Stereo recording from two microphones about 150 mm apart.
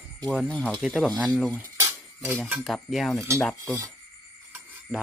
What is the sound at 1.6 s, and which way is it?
Cutlery, 25° right (ahead or behind).